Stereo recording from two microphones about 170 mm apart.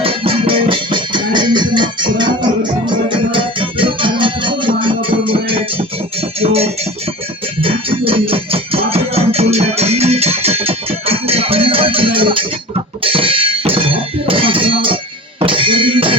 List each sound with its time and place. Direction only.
0.0 s music: 30° right (ahead or behind)
3.3 s music: 30° right (ahead or behind)